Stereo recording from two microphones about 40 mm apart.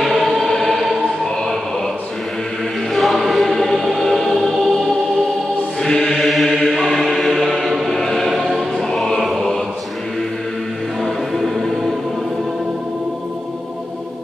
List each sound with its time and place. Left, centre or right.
0.0 s choir: centre
2.9 s choir: centre
5.9 s chant: centre
8.7 s music: centre
9.2 s music: centre
11.0 s music: centre